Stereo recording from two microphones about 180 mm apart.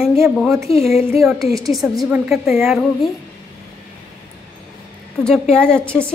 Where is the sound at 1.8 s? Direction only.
Centre (ahead or behind).